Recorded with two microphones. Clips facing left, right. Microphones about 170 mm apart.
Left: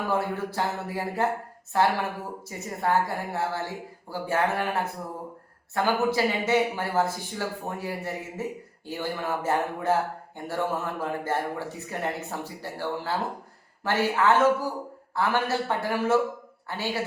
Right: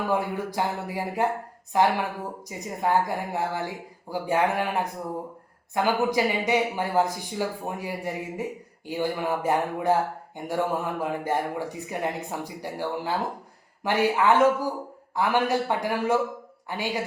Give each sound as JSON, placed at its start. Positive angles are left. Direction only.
{"t": 0.1, "sound": "a man's voice", "side_deg": -15}